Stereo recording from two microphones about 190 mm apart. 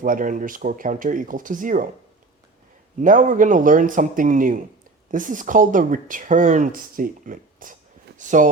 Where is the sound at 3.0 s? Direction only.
45° right (ahead or behind).